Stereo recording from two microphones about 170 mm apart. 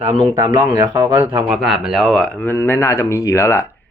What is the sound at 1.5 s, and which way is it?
A man's voice, centre (ahead or behind).